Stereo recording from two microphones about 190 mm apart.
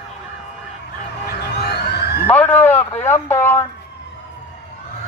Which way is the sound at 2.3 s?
10° left (ahead or behind).